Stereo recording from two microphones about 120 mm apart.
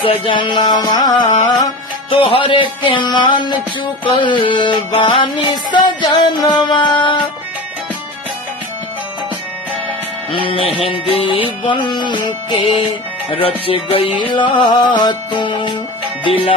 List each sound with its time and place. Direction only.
0.0 s music: 45° left (ahead or behind)
2.0 s music: 45° left (ahead or behind)
10.3 s music: 50° left (ahead or behind)